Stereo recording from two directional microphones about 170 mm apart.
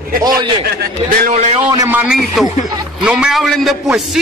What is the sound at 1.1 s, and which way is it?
Speech, 55° right (ahead or behind).